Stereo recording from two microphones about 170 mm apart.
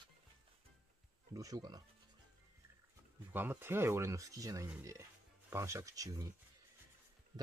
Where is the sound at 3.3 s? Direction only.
10° right (ahead or behind).